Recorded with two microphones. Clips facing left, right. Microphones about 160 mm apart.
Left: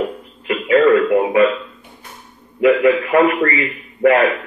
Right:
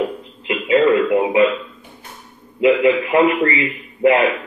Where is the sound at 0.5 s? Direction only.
20° right (ahead or behind).